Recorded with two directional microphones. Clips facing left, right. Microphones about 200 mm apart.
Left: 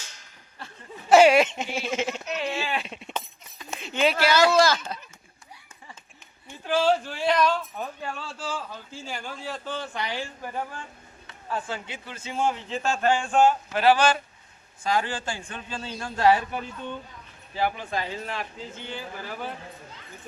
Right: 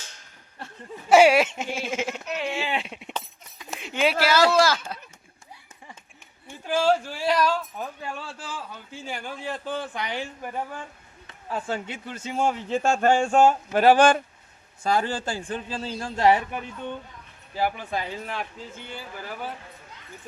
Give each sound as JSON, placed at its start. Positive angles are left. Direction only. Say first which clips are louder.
{"t": 1.1, "sound": "speech", "louder": "even", "side_deg": -10}
{"t": 6.7, "sound": "speech", "louder": "even", "side_deg": -10}
{"t": 11.7, "sound": "a man's voice", "louder": "right 4 dB", "side_deg": -45}
{"t": 17.6, "sound": "speech", "louder": "even", "side_deg": -10}